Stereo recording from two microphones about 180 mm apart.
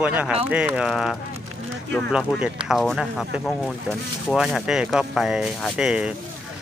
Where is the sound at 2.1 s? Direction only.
5° right (ahead or behind).